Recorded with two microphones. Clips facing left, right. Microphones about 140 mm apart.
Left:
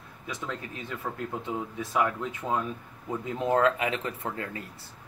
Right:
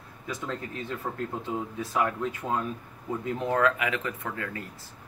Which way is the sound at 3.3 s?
25° left (ahead or behind).